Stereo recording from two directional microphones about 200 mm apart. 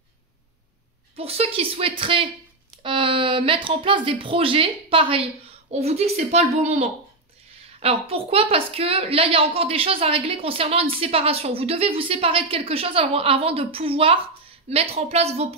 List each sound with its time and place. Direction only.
1.1 s a woman's voice: 30° right (ahead or behind)